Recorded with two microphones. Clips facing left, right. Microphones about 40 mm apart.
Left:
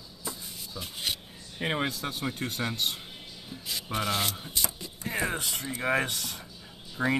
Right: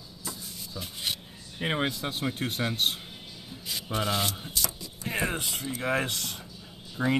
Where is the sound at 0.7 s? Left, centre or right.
Centre.